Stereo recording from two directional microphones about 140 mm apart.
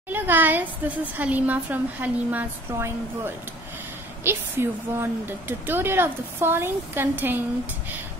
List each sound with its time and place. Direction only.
0.1 s a woman's voice: 15° right (ahead or behind)